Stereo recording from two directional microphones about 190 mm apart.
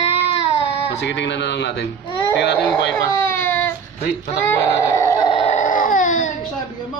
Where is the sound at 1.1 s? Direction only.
65° left (ahead or behind).